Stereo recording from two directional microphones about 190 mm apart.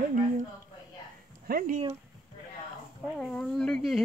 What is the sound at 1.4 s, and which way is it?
Speech, 50° right (ahead or behind).